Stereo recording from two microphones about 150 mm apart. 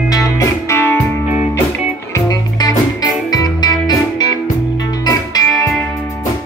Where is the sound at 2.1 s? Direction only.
25° left (ahead or behind).